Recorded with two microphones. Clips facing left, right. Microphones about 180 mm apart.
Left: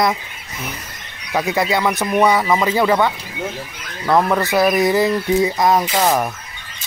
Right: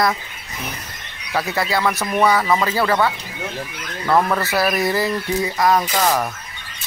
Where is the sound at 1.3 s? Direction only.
15° left (ahead or behind).